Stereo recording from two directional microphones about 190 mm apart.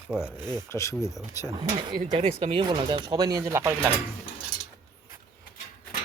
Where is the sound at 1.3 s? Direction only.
15° right (ahead or behind).